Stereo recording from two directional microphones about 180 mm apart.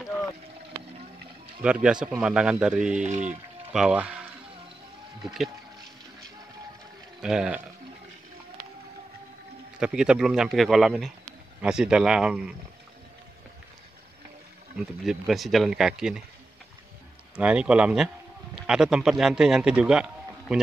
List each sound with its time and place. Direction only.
1.6 s speech: 5° right (ahead or behind)
3.0 s speech: 40° right (ahead or behind)
3.7 s speech: 5° right (ahead or behind)
5.2 s speech: centre (ahead or behind)
7.2 s speech: 5° right (ahead or behind)
9.8 s speech: 5° right (ahead or behind)
14.8 s speech: centre (ahead or behind)
17.4 s speech: 5° right (ahead or behind)